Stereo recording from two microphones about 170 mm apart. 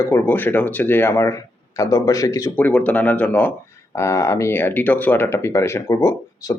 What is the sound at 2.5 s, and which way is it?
Speech, 10° left (ahead or behind).